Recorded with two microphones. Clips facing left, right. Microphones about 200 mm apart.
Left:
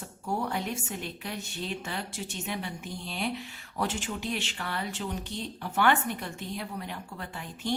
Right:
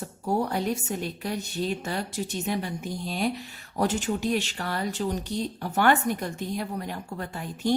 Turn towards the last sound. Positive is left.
turn(degrees=-40)  # may be behind; listen again after turning